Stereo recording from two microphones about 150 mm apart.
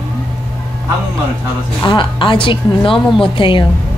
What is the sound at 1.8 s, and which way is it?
A woman's voice, 35° left (ahead or behind).